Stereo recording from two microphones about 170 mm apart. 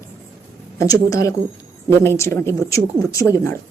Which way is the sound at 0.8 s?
20° left (ahead or behind).